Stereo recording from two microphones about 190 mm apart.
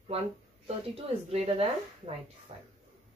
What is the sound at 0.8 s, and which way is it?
Speech, 30° right (ahead or behind).